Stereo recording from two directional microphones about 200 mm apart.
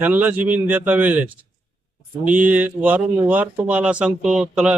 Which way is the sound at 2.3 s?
5° right (ahead or behind).